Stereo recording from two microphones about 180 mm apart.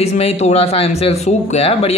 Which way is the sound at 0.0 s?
35° left (ahead or behind).